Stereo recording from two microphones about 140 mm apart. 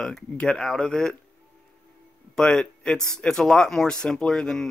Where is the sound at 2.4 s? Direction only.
5° left (ahead or behind).